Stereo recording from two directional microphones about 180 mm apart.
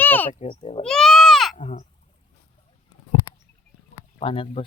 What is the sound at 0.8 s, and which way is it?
Sheep, 5° left (ahead or behind).